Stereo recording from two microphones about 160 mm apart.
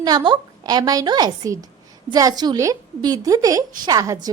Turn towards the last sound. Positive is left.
turn(degrees=-20)  # may be behind; listen again after turning